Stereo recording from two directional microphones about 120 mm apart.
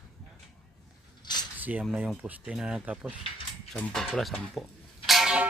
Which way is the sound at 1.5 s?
15° right (ahead or behind).